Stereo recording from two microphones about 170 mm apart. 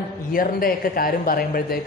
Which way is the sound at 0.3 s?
60° left (ahead or behind).